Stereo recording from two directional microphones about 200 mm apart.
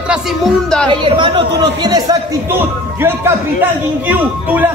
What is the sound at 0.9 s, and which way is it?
A man's voice, 25° right (ahead or behind).